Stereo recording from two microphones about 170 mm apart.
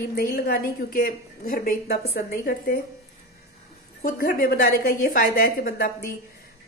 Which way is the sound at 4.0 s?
60° left (ahead or behind).